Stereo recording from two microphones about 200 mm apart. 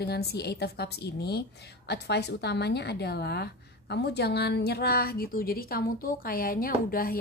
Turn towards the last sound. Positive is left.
turn(degrees=45)  # may be behind; listen again after turning